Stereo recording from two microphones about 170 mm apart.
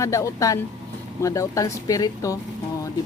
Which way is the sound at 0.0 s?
20° left (ahead or behind).